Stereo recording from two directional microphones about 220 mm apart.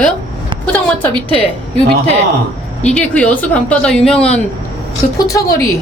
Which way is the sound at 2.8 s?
5° left (ahead or behind).